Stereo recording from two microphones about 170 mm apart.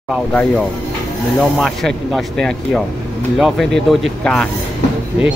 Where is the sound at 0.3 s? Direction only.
5° left (ahead or behind).